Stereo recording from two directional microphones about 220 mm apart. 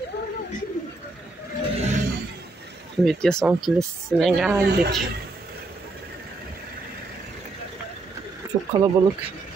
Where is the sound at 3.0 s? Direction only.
Centre (ahead or behind).